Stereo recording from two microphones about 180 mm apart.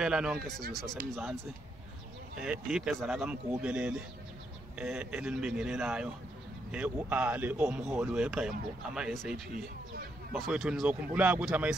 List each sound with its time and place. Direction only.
0.0 s speech: 5° right (ahead or behind)
9.3 s speech: 55° right (ahead or behind)
10.3 s speech: centre (ahead or behind)